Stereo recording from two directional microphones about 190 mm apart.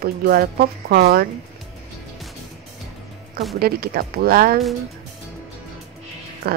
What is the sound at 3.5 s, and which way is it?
Speech, 55° right (ahead or behind).